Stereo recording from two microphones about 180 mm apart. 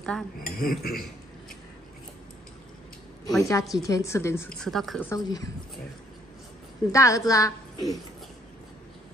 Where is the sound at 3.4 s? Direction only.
15° left (ahead or behind).